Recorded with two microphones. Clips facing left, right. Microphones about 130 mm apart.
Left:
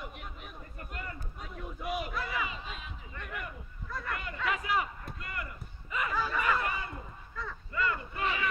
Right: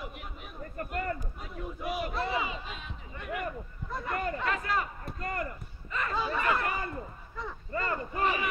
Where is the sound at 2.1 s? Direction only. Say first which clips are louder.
Right 4 dB; 25° right (ahead or behind).